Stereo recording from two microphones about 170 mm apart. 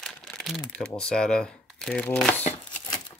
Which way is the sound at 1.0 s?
5° left (ahead or behind).